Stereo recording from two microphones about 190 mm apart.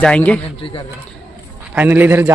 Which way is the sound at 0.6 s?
30° left (ahead or behind).